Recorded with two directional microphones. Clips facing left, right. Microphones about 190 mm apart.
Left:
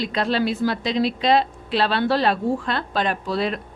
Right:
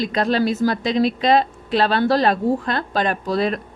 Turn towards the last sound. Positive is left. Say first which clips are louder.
# right 3 dB
turn(degrees=-45)  # may be behind; listen again after turning